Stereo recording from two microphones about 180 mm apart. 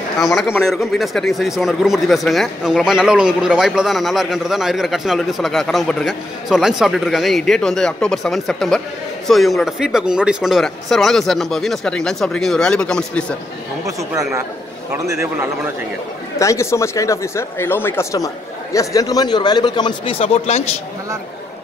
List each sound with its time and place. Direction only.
0.4 s speech: centre (ahead or behind)
14.9 s a man's voice: 15° right (ahead or behind)
16.3 s speech: 15° left (ahead or behind); by 20.6 s 35° left (ahead or behind)